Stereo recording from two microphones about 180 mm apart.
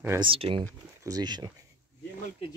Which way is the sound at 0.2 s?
30° right (ahead or behind).